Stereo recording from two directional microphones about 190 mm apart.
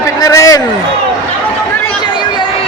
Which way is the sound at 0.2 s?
15° left (ahead or behind).